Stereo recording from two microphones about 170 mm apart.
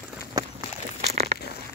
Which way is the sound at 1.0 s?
40° right (ahead or behind).